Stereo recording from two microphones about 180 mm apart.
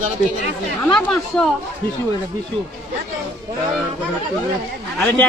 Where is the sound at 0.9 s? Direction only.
5° left (ahead or behind).